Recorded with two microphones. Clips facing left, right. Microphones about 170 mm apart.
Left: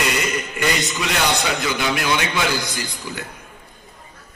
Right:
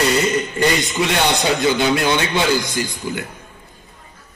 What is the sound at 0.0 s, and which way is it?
Music, 30° right (ahead or behind).